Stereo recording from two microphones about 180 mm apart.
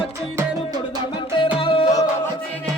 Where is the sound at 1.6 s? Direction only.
30° left (ahead or behind).